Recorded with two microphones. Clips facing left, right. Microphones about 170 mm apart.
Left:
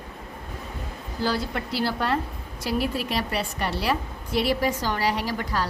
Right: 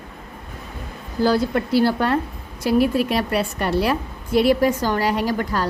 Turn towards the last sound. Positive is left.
turn(degrees=-50)  # may be behind; listen again after turning